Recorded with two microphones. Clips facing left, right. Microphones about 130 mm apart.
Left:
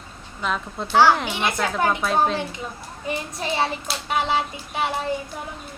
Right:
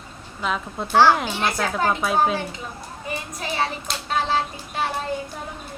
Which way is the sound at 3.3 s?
25° left (ahead or behind).